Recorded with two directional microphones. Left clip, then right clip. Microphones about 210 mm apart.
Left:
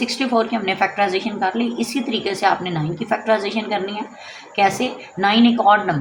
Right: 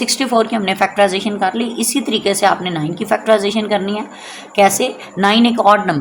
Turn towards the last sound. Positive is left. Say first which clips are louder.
# right 3 dB
turn(degrees=-50)  # may be behind; listen again after turning